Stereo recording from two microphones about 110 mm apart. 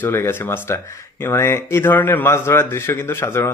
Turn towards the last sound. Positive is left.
turn(degrees=20)  # may be behind; listen again after turning